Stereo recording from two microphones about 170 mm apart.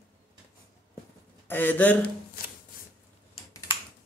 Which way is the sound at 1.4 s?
10° left (ahead or behind).